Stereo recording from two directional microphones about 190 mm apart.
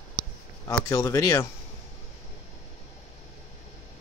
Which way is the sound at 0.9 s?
20° left (ahead or behind).